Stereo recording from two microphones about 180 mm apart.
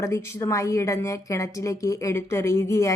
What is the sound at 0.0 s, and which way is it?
A woman's voice, 15° left (ahead or behind).